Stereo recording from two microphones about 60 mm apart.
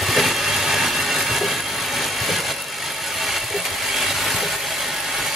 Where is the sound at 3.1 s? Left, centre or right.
Centre.